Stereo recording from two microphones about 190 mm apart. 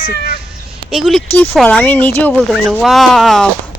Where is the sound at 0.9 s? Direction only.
Centre (ahead or behind).